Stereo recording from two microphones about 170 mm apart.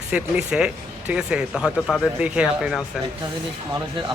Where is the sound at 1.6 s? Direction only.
5° left (ahead or behind).